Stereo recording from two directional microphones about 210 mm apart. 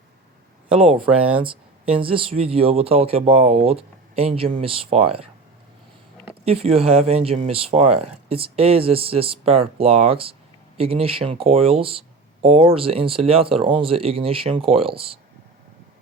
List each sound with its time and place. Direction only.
0.7 s speech: 25° right (ahead or behind)
6.4 s speech: 30° right (ahead or behind)